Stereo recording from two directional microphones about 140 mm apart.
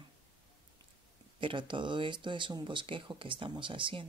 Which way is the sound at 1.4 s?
35° right (ahead or behind).